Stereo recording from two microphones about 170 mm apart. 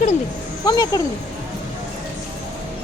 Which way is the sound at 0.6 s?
20° left (ahead or behind).